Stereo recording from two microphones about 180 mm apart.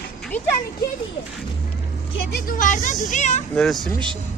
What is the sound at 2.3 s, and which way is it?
A woman's voice, 50° left (ahead or behind).